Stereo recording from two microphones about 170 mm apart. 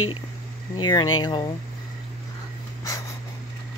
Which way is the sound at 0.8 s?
25° left (ahead or behind).